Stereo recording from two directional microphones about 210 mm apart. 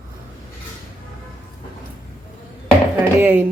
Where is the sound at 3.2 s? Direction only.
10° right (ahead or behind).